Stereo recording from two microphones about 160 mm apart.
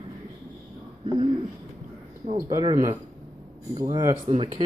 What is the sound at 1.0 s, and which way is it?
Speech, 30° right (ahead or behind).